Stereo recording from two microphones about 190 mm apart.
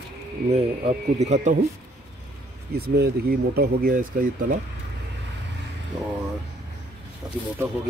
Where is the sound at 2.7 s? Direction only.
55° right (ahead or behind).